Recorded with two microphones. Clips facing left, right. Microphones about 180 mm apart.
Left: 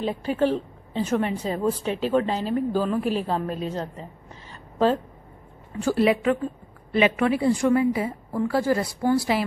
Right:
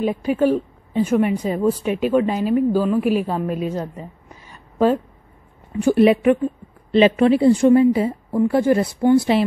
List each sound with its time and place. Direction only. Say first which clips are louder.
0.0 s a woman's voice: right 5 dB; 15° right (ahead or behind)